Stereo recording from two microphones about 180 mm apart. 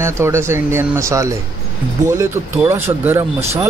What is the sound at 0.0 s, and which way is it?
Speech, 15° right (ahead or behind).